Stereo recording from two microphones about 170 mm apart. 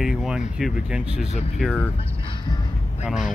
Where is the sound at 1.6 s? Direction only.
5° left (ahead or behind).